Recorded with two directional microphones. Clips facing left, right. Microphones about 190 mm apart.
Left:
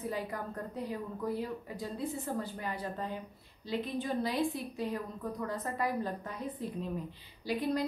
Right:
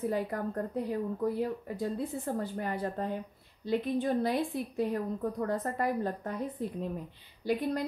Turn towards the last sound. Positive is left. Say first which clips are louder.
# right 2 dB
turn(degrees=-55)  # may be behind; listen again after turning